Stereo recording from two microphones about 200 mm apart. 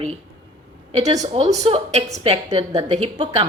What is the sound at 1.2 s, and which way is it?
A woman's voice, 35° right (ahead or behind).